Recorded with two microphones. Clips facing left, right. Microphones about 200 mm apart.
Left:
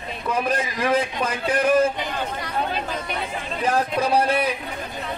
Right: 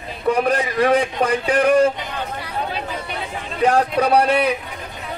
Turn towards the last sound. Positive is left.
turn(degrees=-70)  # may be behind; listen again after turning